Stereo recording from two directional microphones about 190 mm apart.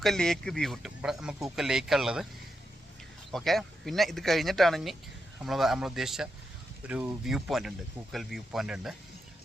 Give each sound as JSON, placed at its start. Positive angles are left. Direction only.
{"t": 0.0, "sound": "speech", "side_deg": 0}
{"t": 3.3, "sound": "speech", "side_deg": 0}